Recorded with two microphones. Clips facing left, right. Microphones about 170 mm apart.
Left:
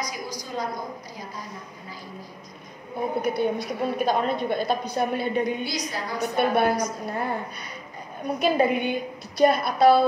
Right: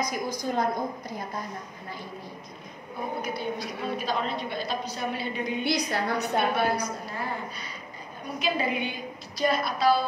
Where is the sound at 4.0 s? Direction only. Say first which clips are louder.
Left 8 dB; 50° left (ahead or behind).